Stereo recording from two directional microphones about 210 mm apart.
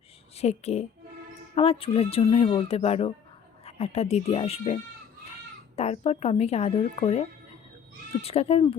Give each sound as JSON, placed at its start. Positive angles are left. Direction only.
{"t": 0.3, "sound": "a woman's voice", "side_deg": 30}
{"t": 8.2, "sound": "speech", "side_deg": 30}